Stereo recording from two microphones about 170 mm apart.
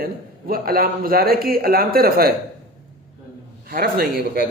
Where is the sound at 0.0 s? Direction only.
60° right (ahead or behind).